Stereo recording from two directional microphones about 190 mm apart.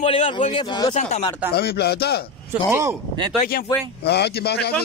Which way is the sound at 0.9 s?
35° left (ahead or behind).